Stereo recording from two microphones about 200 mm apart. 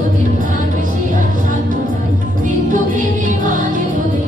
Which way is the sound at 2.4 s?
40° right (ahead or behind).